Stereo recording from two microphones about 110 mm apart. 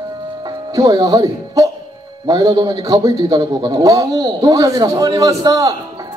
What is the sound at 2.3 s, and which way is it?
A man's voice, 35° right (ahead or behind).